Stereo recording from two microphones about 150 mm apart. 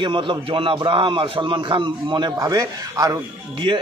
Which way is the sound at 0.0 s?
35° right (ahead or behind).